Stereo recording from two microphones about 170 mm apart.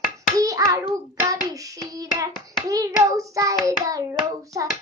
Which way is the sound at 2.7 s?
20° right (ahead or behind).